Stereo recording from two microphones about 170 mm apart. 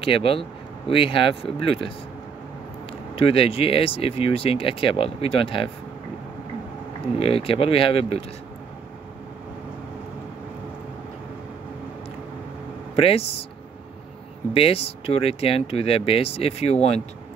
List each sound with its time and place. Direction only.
0.0 s speech: 35° left (ahead or behind)
3.2 s speech: 35° left (ahead or behind)
7.2 s speech: 35° left (ahead or behind)
12.9 s speech: 35° left (ahead or behind)
14.5 s speech: 35° left (ahead or behind)